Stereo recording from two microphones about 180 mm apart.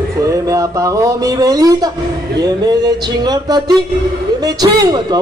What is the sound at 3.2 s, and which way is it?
Speech, 20° right (ahead or behind).